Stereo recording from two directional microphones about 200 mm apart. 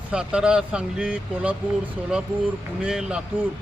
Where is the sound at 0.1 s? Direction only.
5° right (ahead or behind).